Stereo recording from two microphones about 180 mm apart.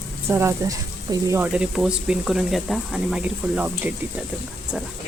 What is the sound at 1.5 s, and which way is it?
Speech, 5° right (ahead or behind).